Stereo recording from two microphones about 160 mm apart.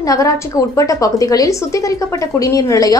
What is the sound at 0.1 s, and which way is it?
Speech, 20° left (ahead or behind).